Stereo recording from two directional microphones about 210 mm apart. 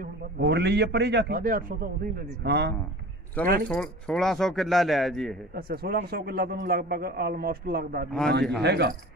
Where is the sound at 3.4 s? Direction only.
45° right (ahead or behind).